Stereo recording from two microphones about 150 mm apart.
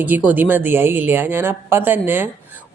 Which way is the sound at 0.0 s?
10° right (ahead or behind).